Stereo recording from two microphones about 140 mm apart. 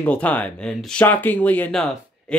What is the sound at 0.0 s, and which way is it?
Speech, 10° left (ahead or behind).